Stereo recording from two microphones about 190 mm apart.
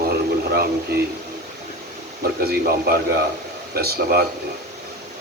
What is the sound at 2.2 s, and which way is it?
Speech, 55° right (ahead or behind).